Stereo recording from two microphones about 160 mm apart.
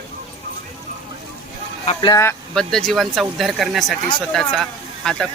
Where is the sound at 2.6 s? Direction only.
5° left (ahead or behind).